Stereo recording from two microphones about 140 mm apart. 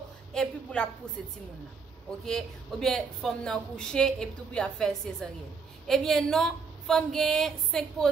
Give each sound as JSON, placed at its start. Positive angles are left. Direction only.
{"t": 0.3, "sound": "speech", "side_deg": 5}
{"t": 2.2, "sound": "a woman's voice", "side_deg": 5}